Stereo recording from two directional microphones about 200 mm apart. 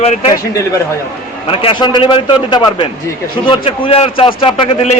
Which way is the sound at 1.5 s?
25° left (ahead or behind).